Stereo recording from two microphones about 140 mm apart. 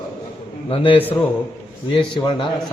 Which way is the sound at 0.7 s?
40° left (ahead or behind).